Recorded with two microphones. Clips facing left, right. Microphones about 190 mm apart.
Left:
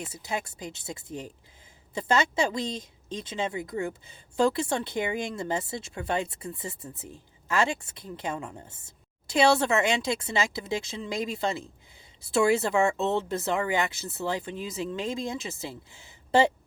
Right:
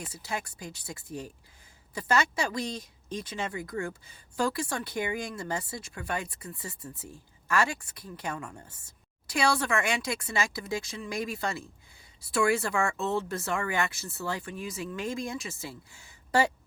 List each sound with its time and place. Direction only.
0.0 s speech: 20° left (ahead or behind)